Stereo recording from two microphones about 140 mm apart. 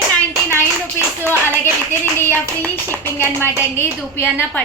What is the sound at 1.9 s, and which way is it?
A woman's voice, 15° left (ahead or behind).